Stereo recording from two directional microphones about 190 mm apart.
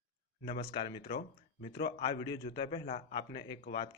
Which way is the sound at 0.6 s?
25° left (ahead or behind).